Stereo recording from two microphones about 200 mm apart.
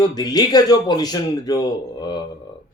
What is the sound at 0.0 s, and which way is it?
Speech, 20° left (ahead or behind).